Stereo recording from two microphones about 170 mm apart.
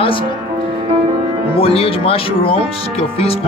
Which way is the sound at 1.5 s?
35° left (ahead or behind).